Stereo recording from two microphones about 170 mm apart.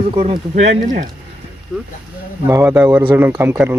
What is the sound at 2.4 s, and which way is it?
A man's voice, 15° right (ahead or behind).